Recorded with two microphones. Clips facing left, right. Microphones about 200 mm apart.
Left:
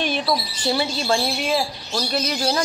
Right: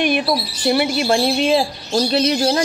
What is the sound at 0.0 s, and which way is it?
A woman's voice, 10° right (ahead or behind).